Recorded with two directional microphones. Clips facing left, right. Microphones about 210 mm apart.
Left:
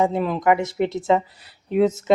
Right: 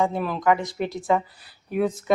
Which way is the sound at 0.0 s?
20° left (ahead or behind).